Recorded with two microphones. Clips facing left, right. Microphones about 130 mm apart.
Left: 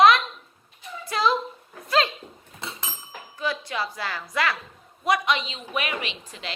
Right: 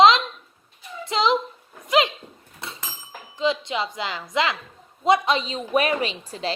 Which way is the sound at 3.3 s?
20° right (ahead or behind).